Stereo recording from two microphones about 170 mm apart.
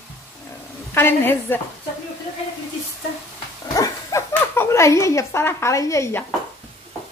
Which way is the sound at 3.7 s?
20° left (ahead or behind).